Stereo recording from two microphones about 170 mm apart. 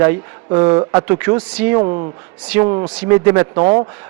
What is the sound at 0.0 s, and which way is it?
Speech, 15° right (ahead or behind).